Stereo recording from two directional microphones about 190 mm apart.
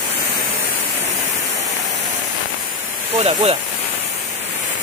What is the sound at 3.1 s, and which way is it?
Speech, 35° right (ahead or behind).